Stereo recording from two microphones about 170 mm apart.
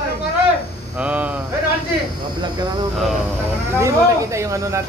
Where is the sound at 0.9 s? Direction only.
10° right (ahead or behind).